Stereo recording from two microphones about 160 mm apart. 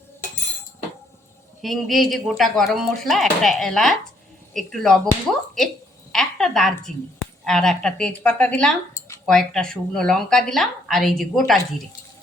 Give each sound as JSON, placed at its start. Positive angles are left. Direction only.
{"t": 1.6, "sound": "a woman's voice", "side_deg": 0}
{"t": 6.1, "sound": "a woman's voice", "side_deg": 5}